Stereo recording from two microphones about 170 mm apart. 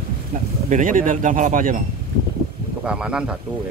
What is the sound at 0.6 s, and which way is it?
Speech, 50° right (ahead or behind).